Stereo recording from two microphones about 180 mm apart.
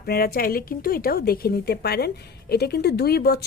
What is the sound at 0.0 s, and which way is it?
A woman's voice, 60° left (ahead or behind).